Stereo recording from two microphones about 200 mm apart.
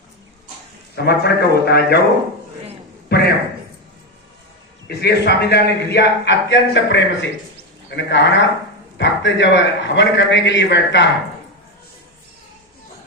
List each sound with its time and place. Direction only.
1.0 s a man's voice: 55° left (ahead or behind)
3.1 s a man's voice: 55° left (ahead or behind)
4.9 s a man's voice: 55° left (ahead or behind)